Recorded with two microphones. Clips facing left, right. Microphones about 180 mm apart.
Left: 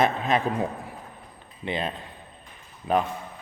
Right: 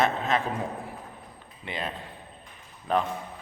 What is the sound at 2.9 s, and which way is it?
Speech, 10° left (ahead or behind).